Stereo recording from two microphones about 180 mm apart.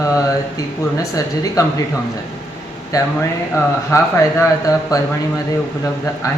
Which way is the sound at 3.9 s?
15° left (ahead or behind).